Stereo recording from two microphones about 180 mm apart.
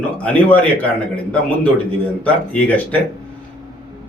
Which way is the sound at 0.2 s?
10° left (ahead or behind).